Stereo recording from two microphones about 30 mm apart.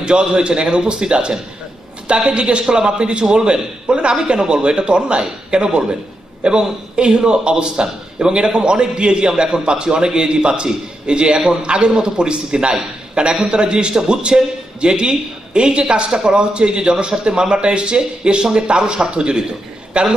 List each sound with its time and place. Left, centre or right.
0.0 s a man's voice: right
9.3 s a man's voice: centre
9.7 s a man's voice: right